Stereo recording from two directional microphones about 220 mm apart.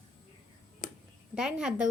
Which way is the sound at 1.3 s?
5° right (ahead or behind).